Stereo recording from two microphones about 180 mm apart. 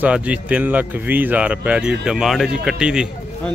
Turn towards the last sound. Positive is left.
turn(degrees=-5)  # may be behind; listen again after turning